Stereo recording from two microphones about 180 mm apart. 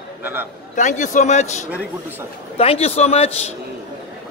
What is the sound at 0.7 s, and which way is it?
A man's voice, 45° left (ahead or behind).